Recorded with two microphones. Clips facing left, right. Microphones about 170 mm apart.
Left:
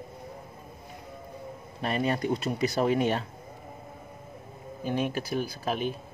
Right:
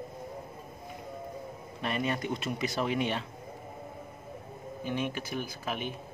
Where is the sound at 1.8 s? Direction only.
35° left (ahead or behind).